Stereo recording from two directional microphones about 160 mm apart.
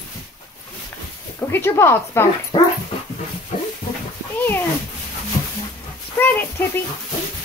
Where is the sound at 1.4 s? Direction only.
15° left (ahead or behind).